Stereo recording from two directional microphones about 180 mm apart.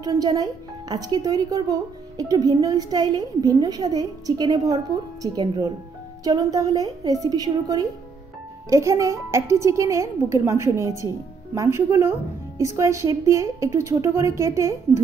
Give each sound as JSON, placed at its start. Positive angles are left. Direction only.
{"t": 0.0, "sound": "speech", "side_deg": -20}